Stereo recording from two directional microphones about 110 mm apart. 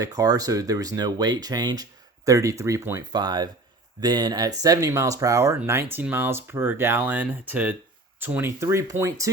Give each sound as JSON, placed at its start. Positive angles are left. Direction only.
{"t": 0.0, "sound": "speech", "side_deg": -35}
{"t": 3.1, "sound": "speech", "side_deg": -40}